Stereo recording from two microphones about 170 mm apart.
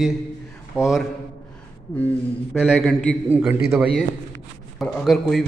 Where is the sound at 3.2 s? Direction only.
10° right (ahead or behind).